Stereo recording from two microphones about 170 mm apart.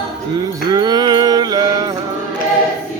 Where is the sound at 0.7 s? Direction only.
20° right (ahead or behind).